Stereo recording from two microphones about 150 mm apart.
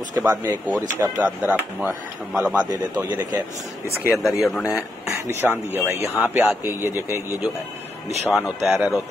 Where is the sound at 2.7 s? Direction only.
25° right (ahead or behind).